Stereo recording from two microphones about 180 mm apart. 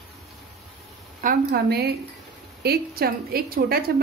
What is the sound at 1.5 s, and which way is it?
A woman's voice, 60° right (ahead or behind).